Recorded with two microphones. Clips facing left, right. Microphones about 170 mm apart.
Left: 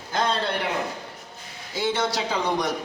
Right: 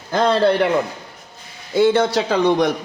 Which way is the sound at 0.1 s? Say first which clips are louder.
Right 10 dB; 60° right (ahead or behind).